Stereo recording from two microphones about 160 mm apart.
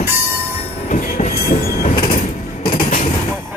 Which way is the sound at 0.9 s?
55° left (ahead or behind).